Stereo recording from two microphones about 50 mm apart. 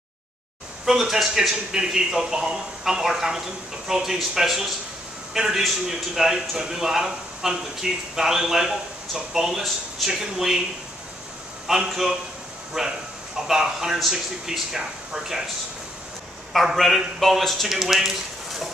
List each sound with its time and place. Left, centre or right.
0.8 s a man's voice: centre
11.6 s a man's voice: centre
16.7 s speech: centre